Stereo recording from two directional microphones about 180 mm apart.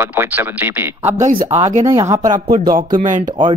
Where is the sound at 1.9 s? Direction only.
15° right (ahead or behind).